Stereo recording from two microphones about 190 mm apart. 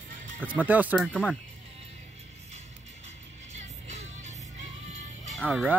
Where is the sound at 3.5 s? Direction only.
35° right (ahead or behind).